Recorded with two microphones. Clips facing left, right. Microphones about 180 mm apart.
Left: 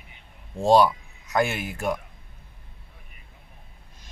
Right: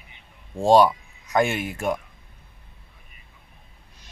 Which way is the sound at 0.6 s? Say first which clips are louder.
Right 2 dB; centre (ahead or behind).